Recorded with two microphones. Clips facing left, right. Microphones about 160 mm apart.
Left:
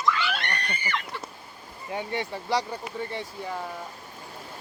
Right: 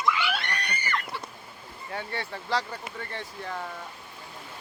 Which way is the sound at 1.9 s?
15° left (ahead or behind).